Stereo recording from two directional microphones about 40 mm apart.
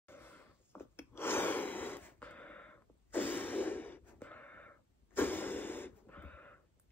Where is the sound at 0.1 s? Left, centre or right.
Left.